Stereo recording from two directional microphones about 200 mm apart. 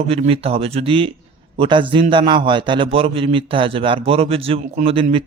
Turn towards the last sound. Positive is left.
turn(degrees=-30)  # may be behind; listen again after turning